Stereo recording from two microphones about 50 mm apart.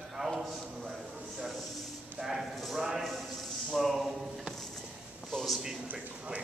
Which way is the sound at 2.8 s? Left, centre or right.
Centre.